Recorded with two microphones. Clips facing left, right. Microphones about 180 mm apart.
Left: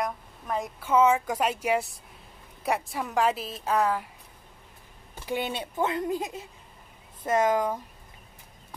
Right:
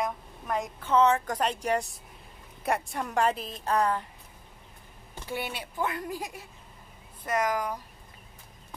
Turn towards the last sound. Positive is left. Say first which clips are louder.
# left 5 dB
turn(degrees=25)  # may be behind; listen again after turning